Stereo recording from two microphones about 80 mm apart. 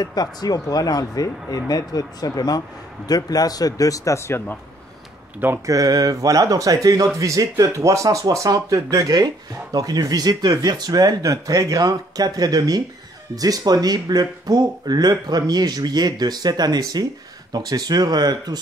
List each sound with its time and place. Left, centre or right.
0.0 s speech: left
5.7 s speech: right